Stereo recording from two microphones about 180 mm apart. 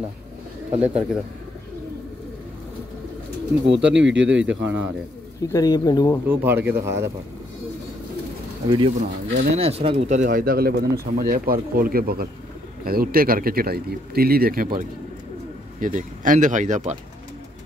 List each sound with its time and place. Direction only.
0.7 s speech: 5° right (ahead or behind)
3.6 s speech: 80° right
5.5 s a man's voice: 20° left (ahead or behind)
6.2 s speech: 10° right (ahead or behind)
8.6 s a man's voice: 25° right (ahead or behind)